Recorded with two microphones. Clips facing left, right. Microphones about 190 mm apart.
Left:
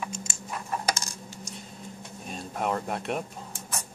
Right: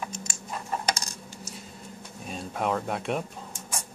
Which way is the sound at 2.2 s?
Centre (ahead or behind).